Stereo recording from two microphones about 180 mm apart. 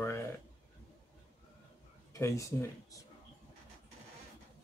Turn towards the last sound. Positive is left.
turn(degrees=15)  # may be behind; listen again after turning